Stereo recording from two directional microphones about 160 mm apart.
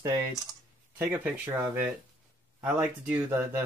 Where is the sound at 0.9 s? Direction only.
10° right (ahead or behind).